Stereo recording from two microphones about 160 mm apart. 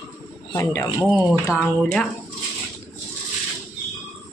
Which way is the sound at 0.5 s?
15° left (ahead or behind).